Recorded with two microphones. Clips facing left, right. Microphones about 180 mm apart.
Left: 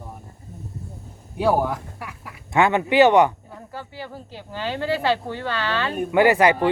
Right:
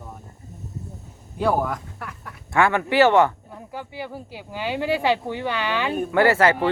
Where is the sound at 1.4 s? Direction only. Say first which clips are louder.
Left 2 dB; 5° left (ahead or behind).